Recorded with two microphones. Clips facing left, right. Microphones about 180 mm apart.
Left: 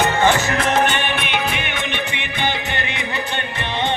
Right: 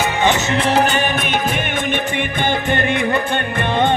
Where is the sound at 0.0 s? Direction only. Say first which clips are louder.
Left 1 dB; 20° right (ahead or behind).